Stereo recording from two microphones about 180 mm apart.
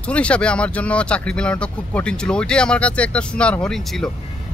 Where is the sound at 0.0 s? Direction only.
5° left (ahead or behind).